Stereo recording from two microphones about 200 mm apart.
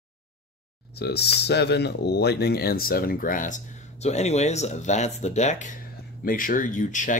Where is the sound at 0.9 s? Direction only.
55° left (ahead or behind).